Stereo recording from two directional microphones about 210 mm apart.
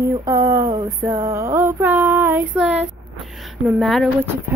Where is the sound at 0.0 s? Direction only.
15° right (ahead or behind).